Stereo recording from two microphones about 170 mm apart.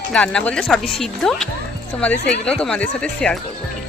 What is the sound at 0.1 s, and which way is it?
A woman's voice, 5° left (ahead or behind).